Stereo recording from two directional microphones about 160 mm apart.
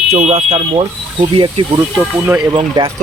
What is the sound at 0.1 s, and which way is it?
Speech, 40° right (ahead or behind).